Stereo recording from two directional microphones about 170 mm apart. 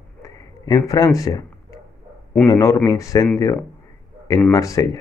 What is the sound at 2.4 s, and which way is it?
Speech, 20° left (ahead or behind).